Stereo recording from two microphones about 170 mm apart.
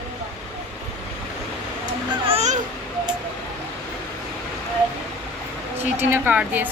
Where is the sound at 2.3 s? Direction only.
40° right (ahead or behind).